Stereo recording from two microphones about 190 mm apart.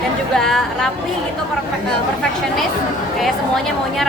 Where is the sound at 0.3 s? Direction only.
Centre (ahead or behind).